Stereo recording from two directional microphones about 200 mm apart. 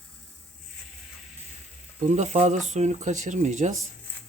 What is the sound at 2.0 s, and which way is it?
Speech, 35° right (ahead or behind).